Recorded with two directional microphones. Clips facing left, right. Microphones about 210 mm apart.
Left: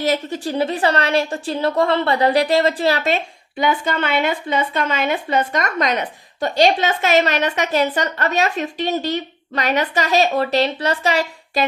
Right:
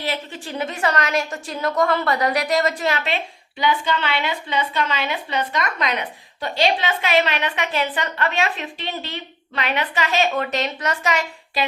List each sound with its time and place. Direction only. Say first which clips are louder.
0.0 s a woman's voice: left 8 dB; 40° left (ahead or behind)